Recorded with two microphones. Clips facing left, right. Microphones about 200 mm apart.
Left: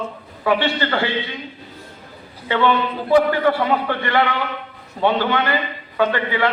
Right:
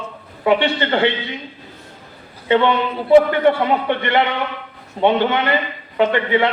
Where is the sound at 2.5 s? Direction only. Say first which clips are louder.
Right 3 dB; 25° right (ahead or behind).